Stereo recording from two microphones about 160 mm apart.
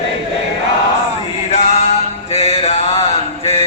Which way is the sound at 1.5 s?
45° left (ahead or behind).